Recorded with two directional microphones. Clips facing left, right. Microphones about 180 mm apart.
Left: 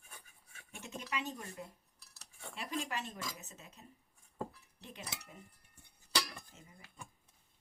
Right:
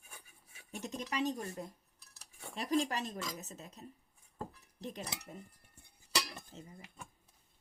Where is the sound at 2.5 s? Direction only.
35° right (ahead or behind).